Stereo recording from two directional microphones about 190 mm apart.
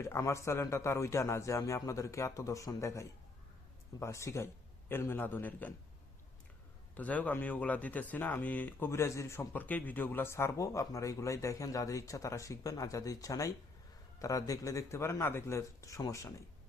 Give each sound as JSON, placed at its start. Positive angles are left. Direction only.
{"t": 0.0, "sound": "speech", "side_deg": 15}
{"t": 6.9, "sound": "speech", "side_deg": 10}